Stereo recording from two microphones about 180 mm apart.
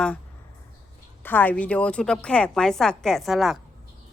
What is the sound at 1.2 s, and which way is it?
A woman's voice, 10° left (ahead or behind).